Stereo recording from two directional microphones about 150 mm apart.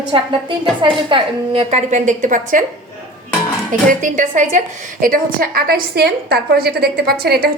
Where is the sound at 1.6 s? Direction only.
50° right (ahead or behind).